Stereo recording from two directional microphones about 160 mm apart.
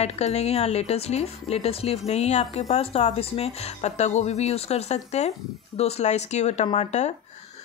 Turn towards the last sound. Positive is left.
turn(degrees=45)  # may be behind; listen again after turning